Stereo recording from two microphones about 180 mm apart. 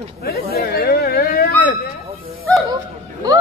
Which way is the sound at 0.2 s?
60° left (ahead or behind).